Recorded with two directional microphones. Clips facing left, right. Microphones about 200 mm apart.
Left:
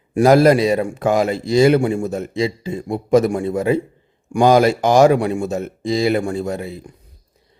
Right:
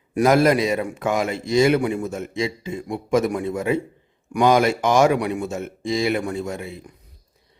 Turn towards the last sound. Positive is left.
turn(degrees=35)  # may be behind; listen again after turning